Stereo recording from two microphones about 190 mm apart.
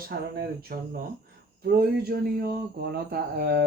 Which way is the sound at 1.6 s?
55° right (ahead or behind).